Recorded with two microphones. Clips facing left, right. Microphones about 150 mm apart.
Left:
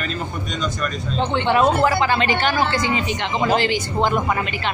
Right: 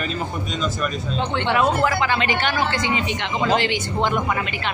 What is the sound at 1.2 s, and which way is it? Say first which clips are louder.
A woman's voice: left 3 dB; 30° left (ahead or behind).